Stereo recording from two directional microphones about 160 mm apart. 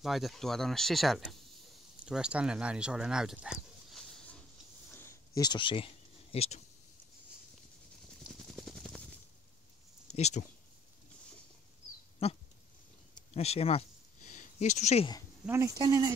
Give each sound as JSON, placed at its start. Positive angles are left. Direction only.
{"t": 0.0, "sound": "speech", "side_deg": 0}
{"t": 4.9, "sound": "a sound", "side_deg": 15}
{"t": 5.4, "sound": "speech", "side_deg": 30}
{"t": 8.5, "sound": "machine gun", "side_deg": 0}
{"t": 10.1, "sound": "speech", "side_deg": 45}
{"t": 12.2, "sound": "speech", "side_deg": 40}
{"t": 13.3, "sound": "a sound", "side_deg": 40}
{"t": 15.4, "sound": "speech", "side_deg": -15}